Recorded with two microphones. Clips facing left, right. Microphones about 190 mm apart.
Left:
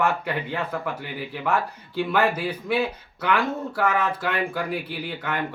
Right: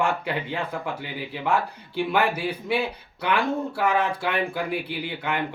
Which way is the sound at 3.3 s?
10° right (ahead or behind).